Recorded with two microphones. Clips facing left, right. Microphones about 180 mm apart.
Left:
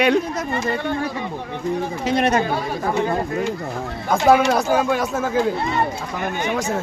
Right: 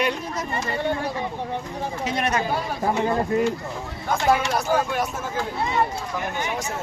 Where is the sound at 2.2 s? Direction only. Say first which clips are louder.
Left 6 dB; 30° left (ahead or behind).